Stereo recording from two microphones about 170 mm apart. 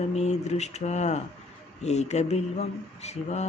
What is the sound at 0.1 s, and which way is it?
Speech, 40° left (ahead or behind).